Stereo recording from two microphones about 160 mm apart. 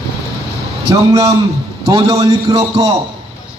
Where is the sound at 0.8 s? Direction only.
20° right (ahead or behind).